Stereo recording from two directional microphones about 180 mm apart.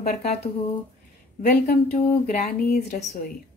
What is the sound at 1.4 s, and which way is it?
Speech, 55° left (ahead or behind).